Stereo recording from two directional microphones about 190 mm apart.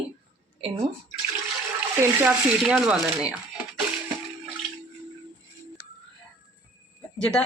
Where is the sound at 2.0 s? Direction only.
10° right (ahead or behind).